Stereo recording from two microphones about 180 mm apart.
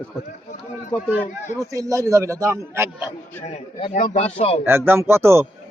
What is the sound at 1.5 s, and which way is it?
Speech, 20° right (ahead or behind).